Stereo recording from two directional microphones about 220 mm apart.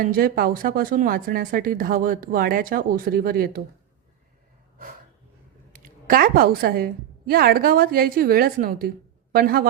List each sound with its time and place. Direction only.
0.0 s speech: 40° right (ahead or behind)
5.7 s a woman's voice: 40° right (ahead or behind)